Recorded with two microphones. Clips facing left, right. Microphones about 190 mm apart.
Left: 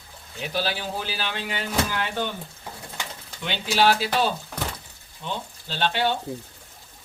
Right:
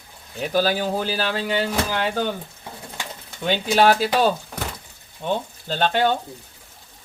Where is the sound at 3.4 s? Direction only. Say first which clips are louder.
Right 4 dB; 45° right (ahead or behind).